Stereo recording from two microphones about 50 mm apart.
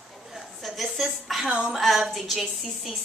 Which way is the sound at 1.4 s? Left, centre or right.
Right.